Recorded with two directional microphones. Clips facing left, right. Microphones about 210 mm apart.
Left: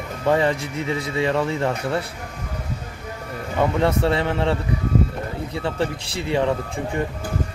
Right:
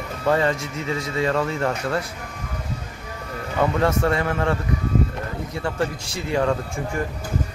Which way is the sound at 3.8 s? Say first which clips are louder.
Left 1 dB; 25° left (ahead or behind).